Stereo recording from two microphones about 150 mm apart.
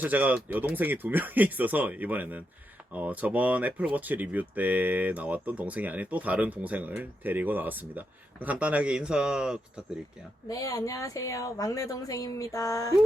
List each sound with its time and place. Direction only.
0.0 s speech: 10° right (ahead or behind)
10.5 s speech: 25° left (ahead or behind)